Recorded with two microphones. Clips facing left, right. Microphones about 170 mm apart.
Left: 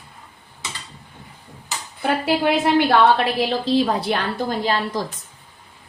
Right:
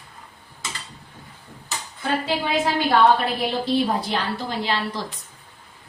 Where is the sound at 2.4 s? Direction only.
80° left.